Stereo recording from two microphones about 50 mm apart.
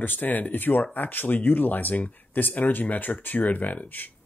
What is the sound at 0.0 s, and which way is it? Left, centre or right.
Speech, left.